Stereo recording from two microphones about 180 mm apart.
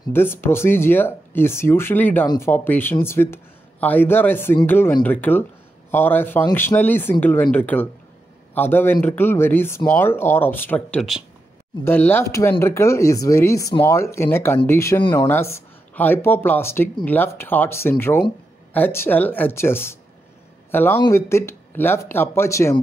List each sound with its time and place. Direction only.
0.1 s speech: 10° left (ahead or behind)